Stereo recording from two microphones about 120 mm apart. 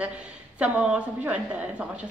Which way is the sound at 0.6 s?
10° right (ahead or behind).